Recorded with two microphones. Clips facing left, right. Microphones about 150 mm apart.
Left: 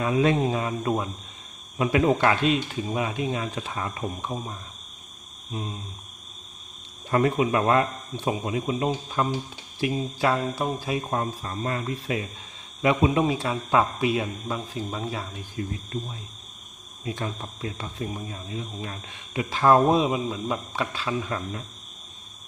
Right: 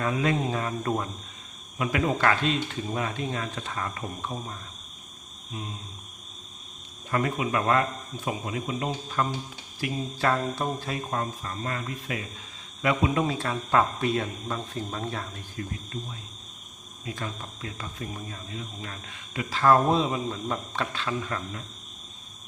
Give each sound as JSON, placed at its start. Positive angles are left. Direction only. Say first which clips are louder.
{"t": 0.2, "sound": "speech", "louder": "left 4 dB", "side_deg": 25}
{"t": 0.6, "sound": "speech", "louder": "left 2 dB", "side_deg": 10}
{"t": 1.8, "sound": "speech", "louder": "left 4 dB", "side_deg": 25}
{"t": 5.5, "sound": "speech", "louder": "left 4 dB", "side_deg": 30}
{"t": 7.1, "sound": "speech", "louder": "left 5 dB", "side_deg": 30}
{"t": 11.1, "sound": "speech", "louder": "left 3 dB", "side_deg": 25}
{"t": 17.1, "sound": "speech", "louder": "left 4 dB", "side_deg": 25}